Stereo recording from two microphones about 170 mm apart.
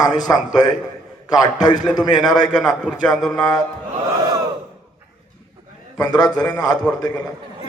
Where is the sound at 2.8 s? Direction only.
5° left (ahead or behind).